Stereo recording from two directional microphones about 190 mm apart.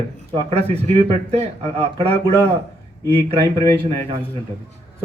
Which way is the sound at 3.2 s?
30° right (ahead or behind).